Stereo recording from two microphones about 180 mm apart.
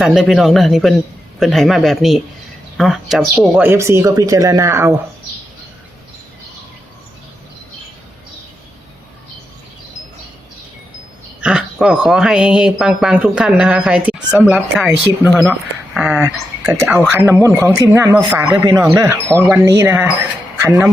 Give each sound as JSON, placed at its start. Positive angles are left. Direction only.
{"t": 0.0, "sound": "speech", "side_deg": 0}
{"t": 3.6, "sound": "speech", "side_deg": -15}
{"t": 11.3, "sound": "speech", "side_deg": -5}